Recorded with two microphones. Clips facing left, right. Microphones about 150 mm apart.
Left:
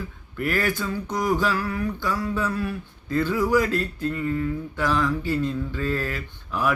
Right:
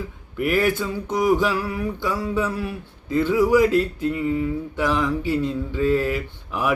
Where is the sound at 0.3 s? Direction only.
20° right (ahead or behind).